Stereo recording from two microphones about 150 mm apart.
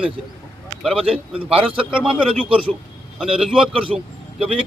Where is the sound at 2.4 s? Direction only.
35° right (ahead or behind).